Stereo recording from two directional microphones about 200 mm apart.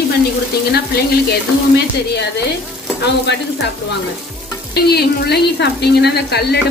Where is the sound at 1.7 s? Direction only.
55° left (ahead or behind).